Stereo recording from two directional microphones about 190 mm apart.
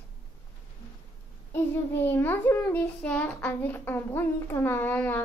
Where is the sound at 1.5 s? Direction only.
10° left (ahead or behind).